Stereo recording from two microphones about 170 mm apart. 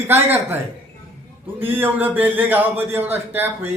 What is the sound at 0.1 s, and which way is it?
A man's voice, 10° right (ahead or behind).